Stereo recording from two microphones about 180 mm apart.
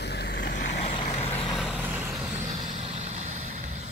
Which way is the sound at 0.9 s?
25° left (ahead or behind).